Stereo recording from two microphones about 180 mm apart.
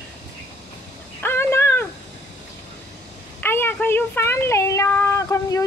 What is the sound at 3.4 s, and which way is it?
Speech, 10° left (ahead or behind).